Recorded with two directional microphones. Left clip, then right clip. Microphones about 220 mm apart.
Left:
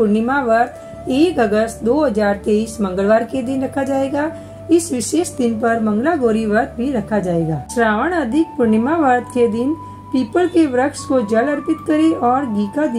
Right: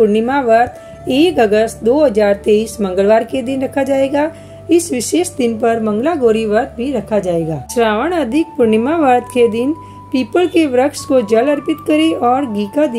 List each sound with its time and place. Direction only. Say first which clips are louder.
0.1 s speech: right 4 dB; 30° right (ahead or behind)